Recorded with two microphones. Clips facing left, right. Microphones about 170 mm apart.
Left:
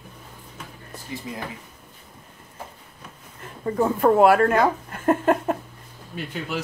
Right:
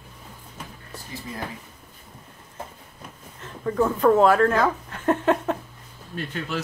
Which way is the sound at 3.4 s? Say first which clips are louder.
Even; 20° left (ahead or behind).